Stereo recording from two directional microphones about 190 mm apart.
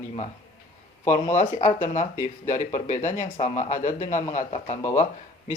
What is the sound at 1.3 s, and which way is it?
Speech, 40° left (ahead or behind).